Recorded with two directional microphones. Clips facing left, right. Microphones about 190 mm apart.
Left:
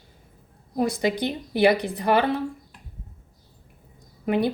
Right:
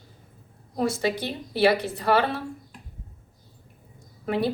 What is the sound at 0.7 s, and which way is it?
A woman's voice, 15° left (ahead or behind).